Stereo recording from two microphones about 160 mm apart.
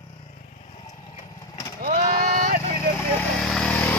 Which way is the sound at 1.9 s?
50° right (ahead or behind).